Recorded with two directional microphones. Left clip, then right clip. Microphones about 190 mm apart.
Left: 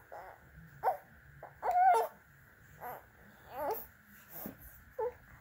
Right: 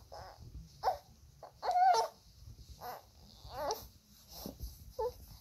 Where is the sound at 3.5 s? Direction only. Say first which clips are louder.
Left 1 dB; 20° left (ahead or behind).